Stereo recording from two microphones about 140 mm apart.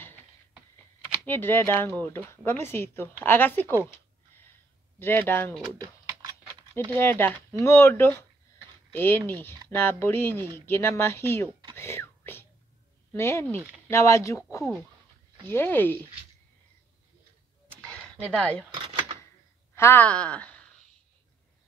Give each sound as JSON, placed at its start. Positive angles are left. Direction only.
{"t": 1.2, "sound": "speech", "side_deg": 15}
{"t": 4.9, "sound": "speech", "side_deg": 15}
{"t": 5.6, "sound": "typing", "side_deg": -30}
{"t": 7.0, "sound": "speech", "side_deg": 15}
{"t": 11.7, "sound": "whispering", "side_deg": 15}
{"t": 13.1, "sound": "speech", "side_deg": 20}
{"t": 14.6, "sound": "speech", "side_deg": 5}
{"t": 18.3, "sound": "speech", "side_deg": 10}
{"t": 18.7, "sound": "a sound", "side_deg": -35}
{"t": 19.7, "sound": "speech", "side_deg": 15}